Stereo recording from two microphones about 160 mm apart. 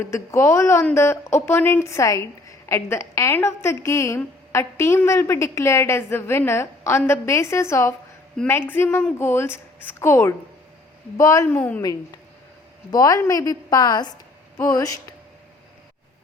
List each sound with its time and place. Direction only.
0.0 s a woman's voice: 20° left (ahead or behind)
11.8 s a woman's voice: 20° left (ahead or behind)